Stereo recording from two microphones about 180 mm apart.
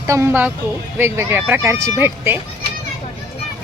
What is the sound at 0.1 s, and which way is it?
Speech, 15° right (ahead or behind).